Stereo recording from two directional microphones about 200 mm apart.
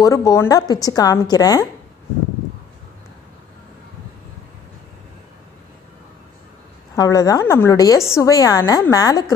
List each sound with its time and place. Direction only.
0.0 s a woman's voice: 15° left (ahead or behind)
7.0 s a woman's voice: 20° left (ahead or behind)